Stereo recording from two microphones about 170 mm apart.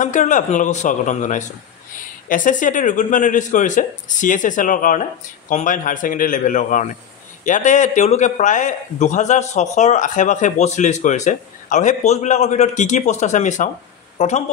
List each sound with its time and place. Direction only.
0.0 s speech: 45° left (ahead or behind)